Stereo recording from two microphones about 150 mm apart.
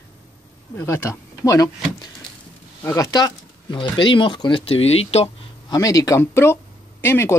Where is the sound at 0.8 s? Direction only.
20° left (ahead or behind); by 5.2 s 45° left (ahead or behind).